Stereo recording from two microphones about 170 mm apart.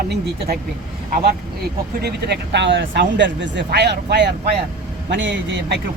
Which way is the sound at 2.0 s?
75° right (ahead or behind).